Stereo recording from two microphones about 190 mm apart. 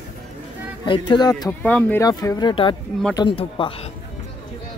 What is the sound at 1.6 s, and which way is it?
Speech, 5° left (ahead or behind).